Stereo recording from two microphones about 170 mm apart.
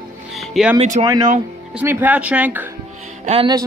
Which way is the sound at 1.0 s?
35° right (ahead or behind).